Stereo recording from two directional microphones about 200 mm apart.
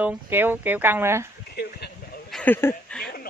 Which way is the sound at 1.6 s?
55° left (ahead or behind).